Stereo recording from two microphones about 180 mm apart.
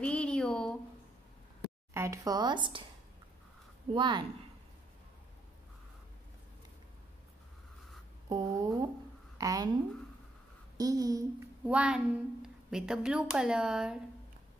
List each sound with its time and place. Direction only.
0.0 s a sound: 5° left (ahead or behind)
2.0 s speech: 20° right (ahead or behind)
3.9 s speech: 25° right (ahead or behind)
8.3 s speech: 20° right (ahead or behind)
10.8 s speech: 20° right (ahead or behind)
11.6 s a woman's voice: 5° right (ahead or behind)